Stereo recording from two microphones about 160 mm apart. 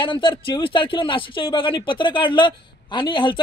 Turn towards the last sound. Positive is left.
turn(degrees=30)  # may be behind; listen again after turning